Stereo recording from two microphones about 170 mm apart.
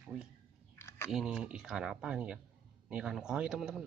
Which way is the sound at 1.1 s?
5° right (ahead or behind).